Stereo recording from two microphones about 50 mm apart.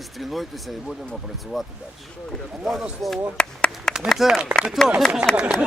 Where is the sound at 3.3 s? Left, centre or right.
Centre.